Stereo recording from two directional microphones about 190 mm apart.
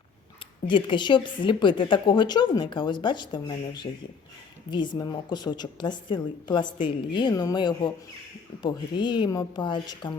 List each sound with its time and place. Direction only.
0.7 s a woman's voice: 25° left (ahead or behind)
4.9 s a woman's voice: 20° left (ahead or behind)